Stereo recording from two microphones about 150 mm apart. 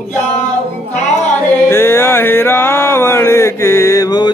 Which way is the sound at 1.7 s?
15° left (ahead or behind).